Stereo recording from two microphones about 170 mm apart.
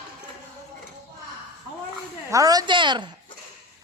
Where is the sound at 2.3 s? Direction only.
20° right (ahead or behind).